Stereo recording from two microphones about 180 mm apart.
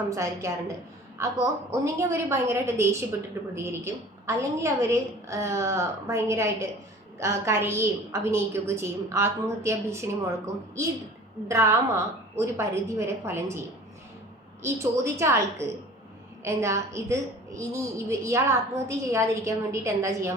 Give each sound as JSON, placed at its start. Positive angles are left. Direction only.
{"t": 0.1, "sound": "a woman's voice", "side_deg": -15}
{"t": 14.6, "sound": "a woman's voice", "side_deg": -15}